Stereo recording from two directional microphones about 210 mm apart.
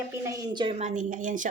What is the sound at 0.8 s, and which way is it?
Speech, 35° right (ahead or behind).